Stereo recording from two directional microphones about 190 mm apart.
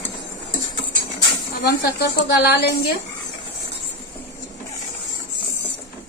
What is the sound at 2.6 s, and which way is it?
Speech, 60° left (ahead or behind).